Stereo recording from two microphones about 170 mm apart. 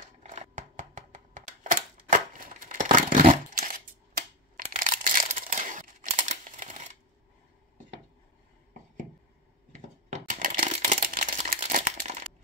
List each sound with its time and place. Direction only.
0.2 s a sound: 45° right (ahead or behind)
9.7 s coin: 50° right (ahead or behind)
11.0 s crumpling: 50° right (ahead or behind)